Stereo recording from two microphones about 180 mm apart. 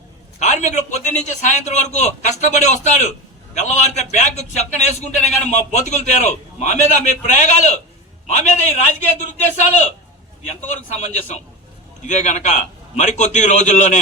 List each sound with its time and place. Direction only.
0.3 s a man's voice: 40° left (ahead or behind)
12.0 s a man's voice: 40° left (ahead or behind)